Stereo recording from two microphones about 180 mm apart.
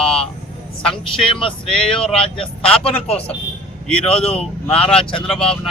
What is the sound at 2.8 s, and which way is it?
Speech, 35° left (ahead or behind).